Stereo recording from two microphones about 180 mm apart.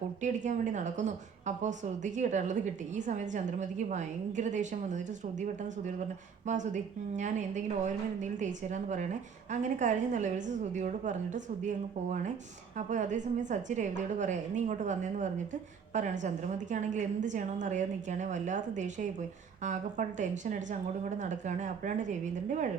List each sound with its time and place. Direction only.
0.2 s a woman's voice: 45° right (ahead or behind)
6.5 s a woman's voice: 40° right (ahead or behind)
12.7 s a woman's voice: 40° right (ahead or behind)